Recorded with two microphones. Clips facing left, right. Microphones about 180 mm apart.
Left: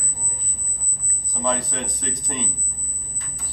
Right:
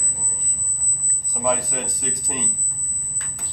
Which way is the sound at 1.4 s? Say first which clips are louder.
Right 2 dB; 10° right (ahead or behind).